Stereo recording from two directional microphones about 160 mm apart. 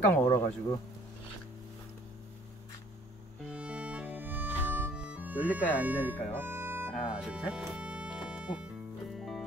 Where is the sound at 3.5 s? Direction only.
5° right (ahead or behind).